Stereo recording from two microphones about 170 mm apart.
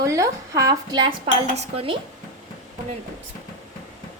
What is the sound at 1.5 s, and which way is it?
Speech, 35° right (ahead or behind).